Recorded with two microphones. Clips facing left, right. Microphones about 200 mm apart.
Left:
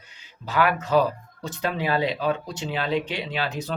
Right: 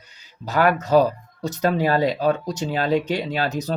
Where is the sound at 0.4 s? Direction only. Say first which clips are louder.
Right 3 dB; 40° right (ahead or behind).